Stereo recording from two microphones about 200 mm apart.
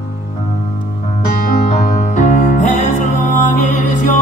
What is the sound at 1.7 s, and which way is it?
Music, 40° left (ahead or behind).